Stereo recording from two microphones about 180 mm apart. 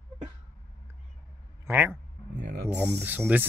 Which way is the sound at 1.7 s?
10° right (ahead or behind).